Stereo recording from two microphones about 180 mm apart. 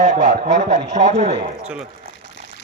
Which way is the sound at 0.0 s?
40° right (ahead or behind).